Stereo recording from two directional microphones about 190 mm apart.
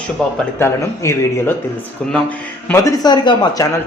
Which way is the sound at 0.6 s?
15° left (ahead or behind).